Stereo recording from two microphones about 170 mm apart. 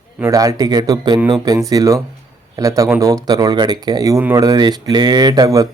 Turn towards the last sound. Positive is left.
turn(degrees=-20)  # may be behind; listen again after turning